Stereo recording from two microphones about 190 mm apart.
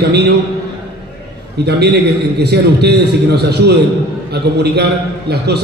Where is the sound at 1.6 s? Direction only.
60° right (ahead or behind).